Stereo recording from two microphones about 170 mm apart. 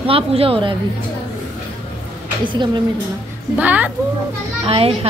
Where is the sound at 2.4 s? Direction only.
30° right (ahead or behind).